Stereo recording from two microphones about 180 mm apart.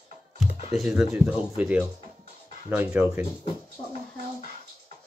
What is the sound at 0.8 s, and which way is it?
Speech, centre (ahead or behind).